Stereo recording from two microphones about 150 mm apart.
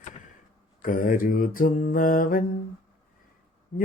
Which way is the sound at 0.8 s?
65° left (ahead or behind).